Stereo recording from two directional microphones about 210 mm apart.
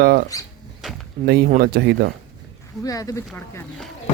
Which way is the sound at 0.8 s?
Centre (ahead or behind).